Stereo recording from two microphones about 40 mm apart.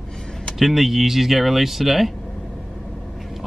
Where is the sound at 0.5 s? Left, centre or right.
Centre.